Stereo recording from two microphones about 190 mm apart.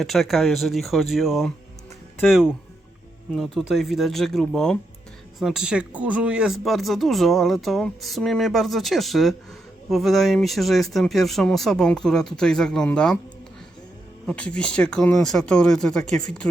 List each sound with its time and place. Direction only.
0.0 s speech: centre (ahead or behind)
3.3 s speech: centre (ahead or behind)
14.3 s speech: 5° left (ahead or behind)